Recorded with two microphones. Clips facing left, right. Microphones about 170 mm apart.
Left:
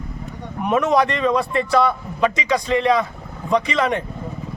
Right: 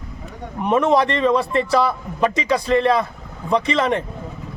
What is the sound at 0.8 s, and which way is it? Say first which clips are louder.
Speech: right 1 dB; 30° right (ahead or behind).